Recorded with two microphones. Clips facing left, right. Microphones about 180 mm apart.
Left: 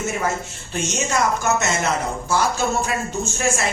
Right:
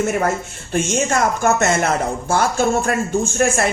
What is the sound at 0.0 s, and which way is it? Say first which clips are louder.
A woman's voice: right 5 dB; 60° right (ahead or behind).